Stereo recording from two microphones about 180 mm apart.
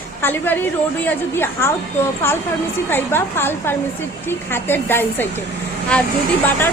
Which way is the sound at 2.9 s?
10° left (ahead or behind).